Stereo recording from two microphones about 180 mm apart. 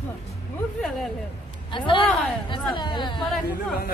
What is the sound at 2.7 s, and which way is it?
Speech, 25° left (ahead or behind).